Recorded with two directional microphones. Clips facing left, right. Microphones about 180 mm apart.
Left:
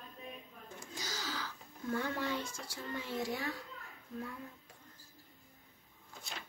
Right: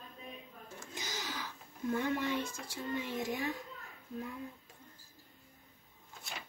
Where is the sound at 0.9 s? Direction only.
20° right (ahead or behind).